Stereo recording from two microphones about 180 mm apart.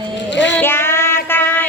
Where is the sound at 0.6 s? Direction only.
10° left (ahead or behind).